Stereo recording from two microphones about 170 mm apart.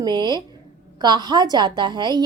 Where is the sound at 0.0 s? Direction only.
25° right (ahead or behind).